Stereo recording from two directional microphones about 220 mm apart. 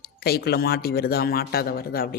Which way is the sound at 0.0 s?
45° left (ahead or behind).